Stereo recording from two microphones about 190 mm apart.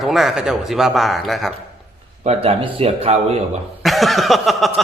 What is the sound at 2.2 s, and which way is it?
Speech, 30° right (ahead or behind).